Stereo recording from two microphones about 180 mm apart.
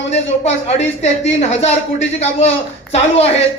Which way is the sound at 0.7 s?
35° left (ahead or behind).